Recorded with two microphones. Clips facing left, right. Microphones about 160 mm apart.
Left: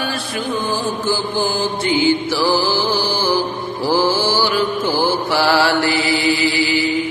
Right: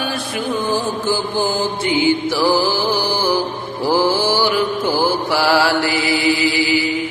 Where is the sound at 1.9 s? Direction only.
15° right (ahead or behind).